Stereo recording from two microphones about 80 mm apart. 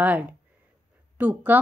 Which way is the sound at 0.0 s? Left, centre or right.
Centre.